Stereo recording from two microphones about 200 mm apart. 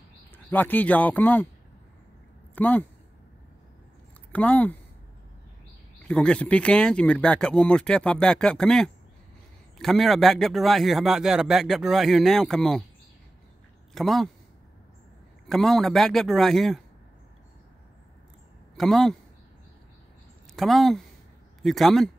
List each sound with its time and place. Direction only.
0.5 s speech: 10° left (ahead or behind)
2.5 s speech: 10° left (ahead or behind)
4.3 s speech: 5° left (ahead or behind)
6.0 s speech: 5° left (ahead or behind)
13.9 s speech: centre (ahead or behind)
15.4 s speech: centre (ahead or behind)
18.8 s speech: centre (ahead or behind)
20.5 s speech: centre (ahead or behind)